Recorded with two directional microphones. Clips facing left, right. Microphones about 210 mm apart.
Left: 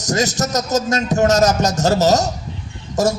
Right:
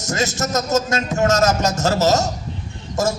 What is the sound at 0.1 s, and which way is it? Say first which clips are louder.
A man's voice: left 2 dB; 35° left (ahead or behind).